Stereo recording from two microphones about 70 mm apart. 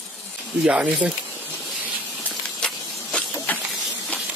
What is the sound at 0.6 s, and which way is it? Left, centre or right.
Speech, centre.